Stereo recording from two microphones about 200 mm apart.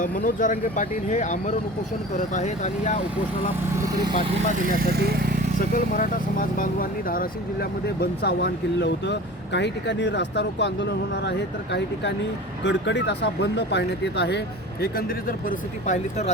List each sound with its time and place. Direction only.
0.0 s speech: 40° left (ahead or behind)
3.8 s speech: 15° right (ahead or behind)
4.5 s speech: 45° right (ahead or behind)
5.5 s speech: 40° left (ahead or behind)